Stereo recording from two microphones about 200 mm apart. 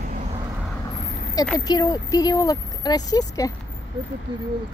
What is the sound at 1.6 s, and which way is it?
Speech, 20° left (ahead or behind).